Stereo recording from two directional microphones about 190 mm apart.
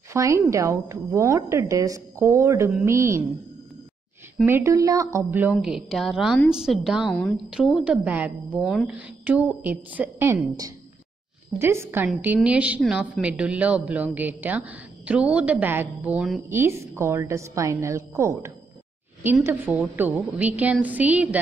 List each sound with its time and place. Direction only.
0.1 s a woman's voice: 15° right (ahead or behind)
4.5 s a woman's voice: 15° right (ahead or behind)
11.5 s a woman's voice: 15° right (ahead or behind)